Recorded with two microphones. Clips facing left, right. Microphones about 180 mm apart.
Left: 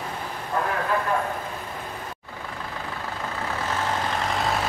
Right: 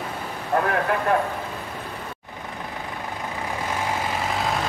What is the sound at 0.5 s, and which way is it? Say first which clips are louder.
Vehicle: right 5 dB; 60° right (ahead or behind).